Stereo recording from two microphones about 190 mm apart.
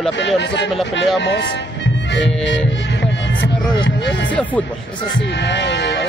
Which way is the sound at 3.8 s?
65° left (ahead or behind).